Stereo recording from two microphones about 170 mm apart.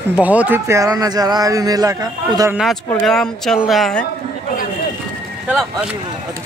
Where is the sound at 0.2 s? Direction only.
10° right (ahead or behind).